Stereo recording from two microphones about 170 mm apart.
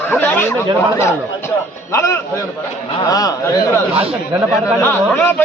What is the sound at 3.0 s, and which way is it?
Speech, 20° left (ahead or behind).